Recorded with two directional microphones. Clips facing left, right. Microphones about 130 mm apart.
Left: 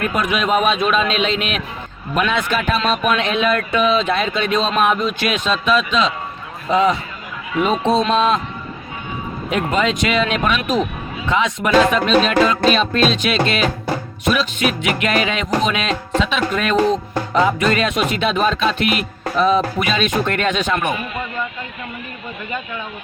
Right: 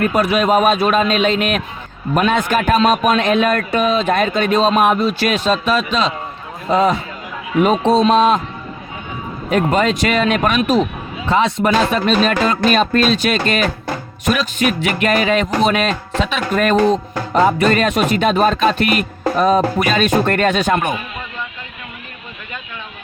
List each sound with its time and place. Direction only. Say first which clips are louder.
0.1 s speech: right 4 dB; 35° right (ahead or behind)
7.6 s speech: right 3 dB; 35° right (ahead or behind)
9.5 s speech: right 4 dB; 40° right (ahead or behind)
11.3 s speech: right 2 dB; 35° right (ahead or behind)